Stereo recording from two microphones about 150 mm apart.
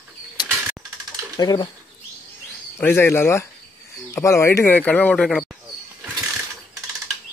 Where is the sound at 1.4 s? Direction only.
25° left (ahead or behind).